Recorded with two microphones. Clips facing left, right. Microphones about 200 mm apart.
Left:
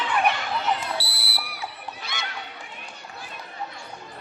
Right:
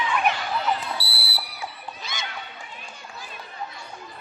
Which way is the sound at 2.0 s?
60° left (ahead or behind).